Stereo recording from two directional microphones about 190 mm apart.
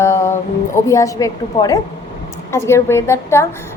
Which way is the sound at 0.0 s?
15° left (ahead or behind).